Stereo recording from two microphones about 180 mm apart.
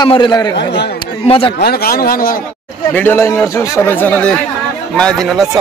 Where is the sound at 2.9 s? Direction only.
10° left (ahead or behind).